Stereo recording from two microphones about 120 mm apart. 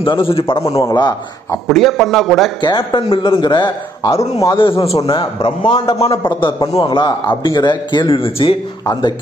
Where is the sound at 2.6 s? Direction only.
35° left (ahead or behind).